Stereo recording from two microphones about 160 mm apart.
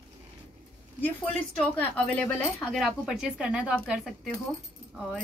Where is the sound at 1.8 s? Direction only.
10° left (ahead or behind).